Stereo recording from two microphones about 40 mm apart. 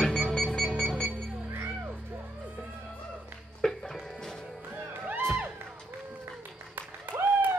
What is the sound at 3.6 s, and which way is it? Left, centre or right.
Music, centre.